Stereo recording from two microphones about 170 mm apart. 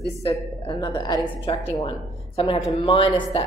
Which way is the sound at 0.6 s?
30° left (ahead or behind).